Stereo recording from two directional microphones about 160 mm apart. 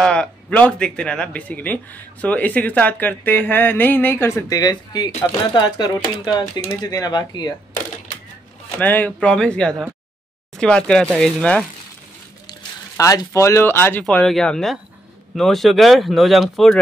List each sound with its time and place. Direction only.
0.0 s speech: 5° left (ahead or behind); by 7.5 s 25° left (ahead or behind)
8.7 s speech: 10° left (ahead or behind)
12.4 s speech: 20° left (ahead or behind)
14.0 s speech: 5° left (ahead or behind)